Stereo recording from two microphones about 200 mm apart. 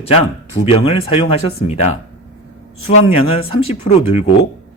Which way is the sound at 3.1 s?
30° left (ahead or behind).